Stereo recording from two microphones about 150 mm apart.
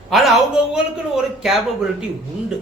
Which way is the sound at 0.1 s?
Centre (ahead or behind).